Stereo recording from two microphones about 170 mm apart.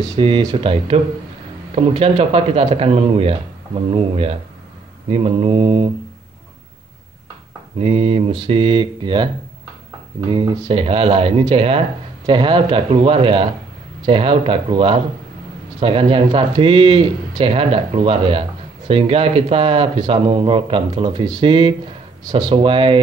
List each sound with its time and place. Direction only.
0.1 s speech: 25° right (ahead or behind)
7.8 s speech: 35° right (ahead or behind)
10.3 s speech: 30° right (ahead or behind)